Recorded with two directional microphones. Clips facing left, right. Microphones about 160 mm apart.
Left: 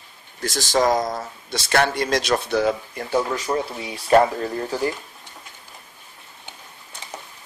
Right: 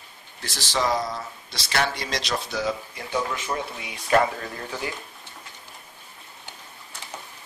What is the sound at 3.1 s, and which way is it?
Speech, 40° left (ahead or behind).